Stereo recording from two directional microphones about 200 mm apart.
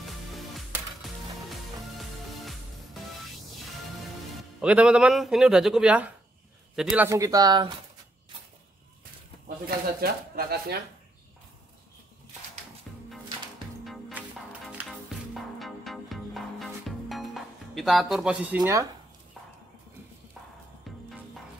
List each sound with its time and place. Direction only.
0.0 s music: centre (ahead or behind)
4.6 s speech: 5° right (ahead or behind); by 7.7 s 20° right (ahead or behind)
9.7 s speech: 50° right (ahead or behind)
13.8 s music: centre (ahead or behind)